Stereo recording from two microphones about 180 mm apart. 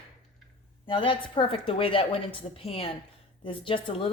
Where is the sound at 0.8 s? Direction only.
30° left (ahead or behind).